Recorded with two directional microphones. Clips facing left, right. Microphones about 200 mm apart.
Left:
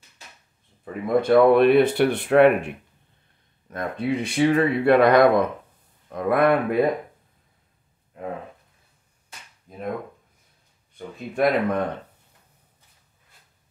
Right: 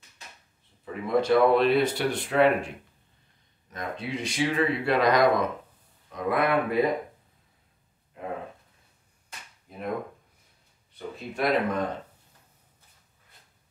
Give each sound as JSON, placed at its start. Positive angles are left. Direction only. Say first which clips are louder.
{"t": 1.0, "sound": "speech", "louder": "left 5 dB", "side_deg": 55}
{"t": 3.7, "sound": "speech", "louder": "left 8 dB", "side_deg": 55}
{"t": 11.3, "sound": "speech", "louder": "left 4 dB", "side_deg": 60}